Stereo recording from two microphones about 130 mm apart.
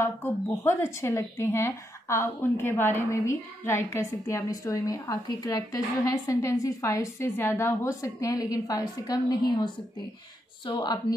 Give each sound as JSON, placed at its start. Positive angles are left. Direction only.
{"t": 0.0, "sound": "speech", "side_deg": 15}
{"t": 10.7, "sound": "a woman's voice", "side_deg": 35}